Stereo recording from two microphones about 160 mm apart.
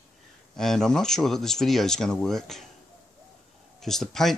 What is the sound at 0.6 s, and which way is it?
Speech, 5° left (ahead or behind).